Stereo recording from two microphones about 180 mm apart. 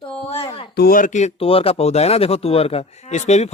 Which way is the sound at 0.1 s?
30° left (ahead or behind).